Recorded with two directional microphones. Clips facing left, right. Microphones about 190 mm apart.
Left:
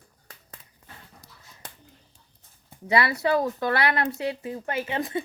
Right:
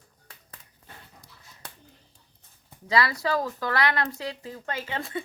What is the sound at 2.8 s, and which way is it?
Speech, 25° left (ahead or behind).